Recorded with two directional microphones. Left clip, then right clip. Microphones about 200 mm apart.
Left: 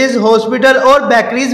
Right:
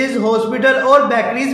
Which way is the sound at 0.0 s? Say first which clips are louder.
Left 6 dB; 30° left (ahead or behind).